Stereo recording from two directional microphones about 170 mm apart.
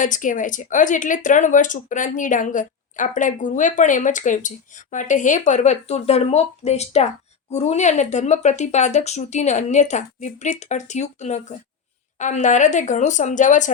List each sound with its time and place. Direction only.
0.0 s speech: 50° left (ahead or behind)